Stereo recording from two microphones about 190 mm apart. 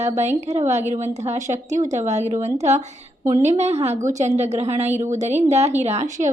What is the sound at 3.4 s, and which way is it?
A woman's voice, 35° right (ahead or behind).